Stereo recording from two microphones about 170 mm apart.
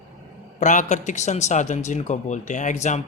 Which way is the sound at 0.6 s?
45° left (ahead or behind).